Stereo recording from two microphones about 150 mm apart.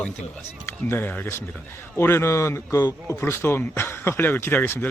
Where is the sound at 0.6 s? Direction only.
15° left (ahead or behind).